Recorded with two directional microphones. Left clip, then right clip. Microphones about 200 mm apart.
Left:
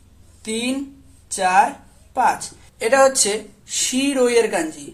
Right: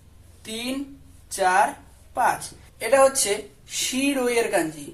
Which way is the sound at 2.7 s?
35° left (ahead or behind).